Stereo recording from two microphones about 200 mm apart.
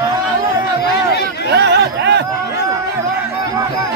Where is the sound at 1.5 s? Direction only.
55° right (ahead or behind).